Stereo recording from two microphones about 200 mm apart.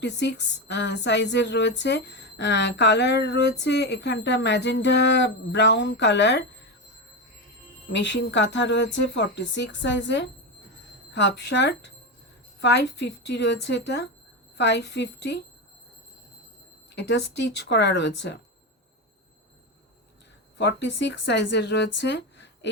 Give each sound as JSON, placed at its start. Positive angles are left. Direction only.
{"t": 0.0, "sound": "speech", "side_deg": 60}
{"t": 7.9, "sound": "speech", "side_deg": 65}
{"t": 16.9, "sound": "speech", "side_deg": 60}
{"t": 20.6, "sound": "speech", "side_deg": 60}